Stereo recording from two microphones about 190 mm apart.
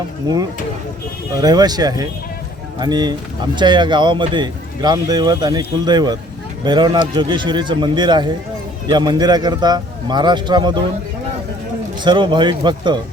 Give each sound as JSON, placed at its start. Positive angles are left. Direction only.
{"t": 1.4, "sound": "speech", "side_deg": -20}
{"t": 12.0, "sound": "speech", "side_deg": -25}